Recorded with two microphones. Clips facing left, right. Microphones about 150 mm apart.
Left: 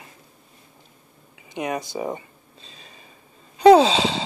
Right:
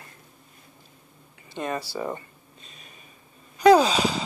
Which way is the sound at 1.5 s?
15° left (ahead or behind).